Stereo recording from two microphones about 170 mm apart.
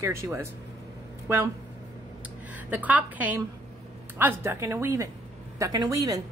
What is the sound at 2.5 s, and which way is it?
A woman's voice, 10° right (ahead or behind).